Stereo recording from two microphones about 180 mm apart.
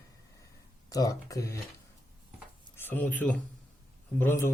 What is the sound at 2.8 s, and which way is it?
Speech, 10° left (ahead or behind).